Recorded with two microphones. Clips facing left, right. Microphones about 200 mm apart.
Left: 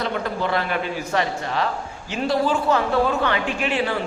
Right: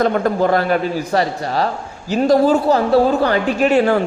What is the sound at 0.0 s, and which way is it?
A man's voice, 45° right (ahead or behind).